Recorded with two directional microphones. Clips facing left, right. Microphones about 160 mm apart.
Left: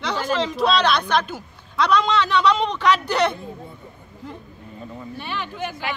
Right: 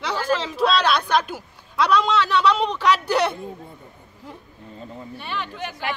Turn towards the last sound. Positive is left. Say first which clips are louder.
# left 1 dB
turn(degrees=0)  # may be behind; listen again after turning